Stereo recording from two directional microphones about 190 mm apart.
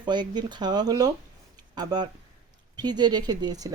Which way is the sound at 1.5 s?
20° right (ahead or behind).